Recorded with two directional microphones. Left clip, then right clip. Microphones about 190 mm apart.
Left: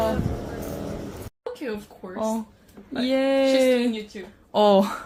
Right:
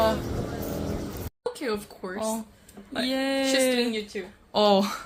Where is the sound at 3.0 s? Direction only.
30° left (ahead or behind).